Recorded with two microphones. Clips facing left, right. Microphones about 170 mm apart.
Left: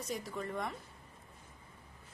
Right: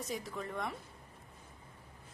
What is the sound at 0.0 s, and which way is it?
Speech, centre (ahead or behind).